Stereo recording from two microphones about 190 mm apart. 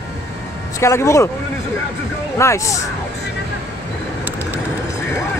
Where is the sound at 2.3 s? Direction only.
15° left (ahead or behind).